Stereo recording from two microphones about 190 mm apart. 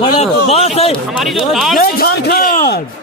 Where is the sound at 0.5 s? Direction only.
30° left (ahead or behind).